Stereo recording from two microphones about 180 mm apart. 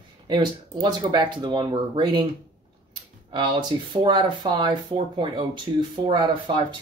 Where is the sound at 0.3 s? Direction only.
25° right (ahead or behind).